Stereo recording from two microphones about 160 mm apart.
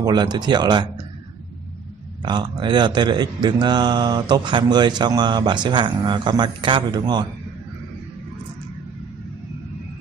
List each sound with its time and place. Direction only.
0.0 s speech: 25° right (ahead or behind)
2.2 s speech: 30° right (ahead or behind)